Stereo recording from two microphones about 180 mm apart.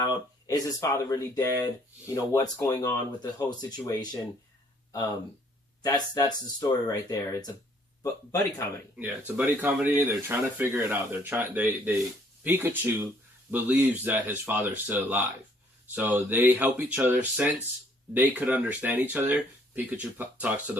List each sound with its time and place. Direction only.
0.0 s speech: 20° left (ahead or behind)
5.8 s speech: 20° left (ahead or behind)
9.0 s speech: 10° right (ahead or behind)